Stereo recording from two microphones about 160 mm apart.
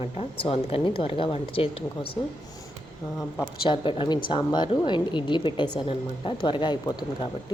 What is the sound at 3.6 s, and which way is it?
A woman's voice, 35° left (ahead or behind).